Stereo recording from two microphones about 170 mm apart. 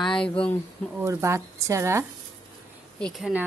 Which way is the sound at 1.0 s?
15° right (ahead or behind).